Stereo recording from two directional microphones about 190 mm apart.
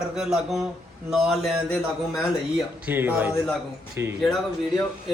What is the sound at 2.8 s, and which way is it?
A man's voice, 10° right (ahead or behind).